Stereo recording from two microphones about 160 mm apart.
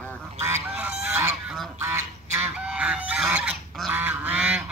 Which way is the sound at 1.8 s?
15° right (ahead or behind).